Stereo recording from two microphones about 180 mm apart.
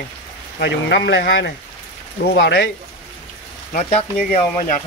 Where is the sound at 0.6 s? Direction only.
75° left (ahead or behind).